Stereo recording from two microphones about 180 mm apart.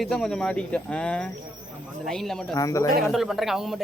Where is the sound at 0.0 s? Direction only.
Centre (ahead or behind).